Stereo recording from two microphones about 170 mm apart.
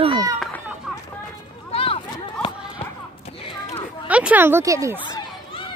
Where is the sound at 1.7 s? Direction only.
35° left (ahead or behind).